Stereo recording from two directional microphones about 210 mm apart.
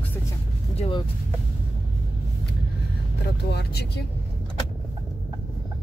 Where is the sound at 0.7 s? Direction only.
25° left (ahead or behind).